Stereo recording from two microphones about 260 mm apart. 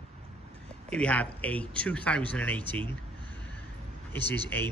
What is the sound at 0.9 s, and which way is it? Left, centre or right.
Speech, centre.